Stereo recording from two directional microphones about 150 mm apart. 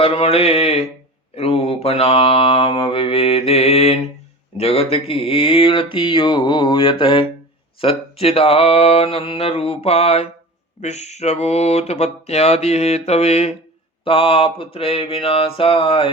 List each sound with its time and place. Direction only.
0.0 s mantra: 40° left (ahead or behind)